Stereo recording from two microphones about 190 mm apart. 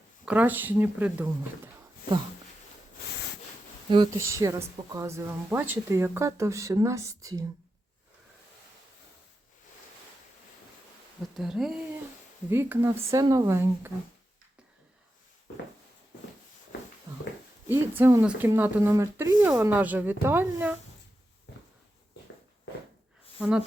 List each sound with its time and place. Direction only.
0.3 s a woman's voice: 10° right (ahead or behind)
3.8 s a woman's voice: 25° right (ahead or behind)
11.2 s a woman's voice: centre (ahead or behind)
17.7 s a woman's voice: 10° right (ahead or behind)
23.4 s speech: 5° right (ahead or behind)